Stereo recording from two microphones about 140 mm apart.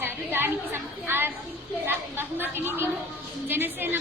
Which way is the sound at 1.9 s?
15° right (ahead or behind).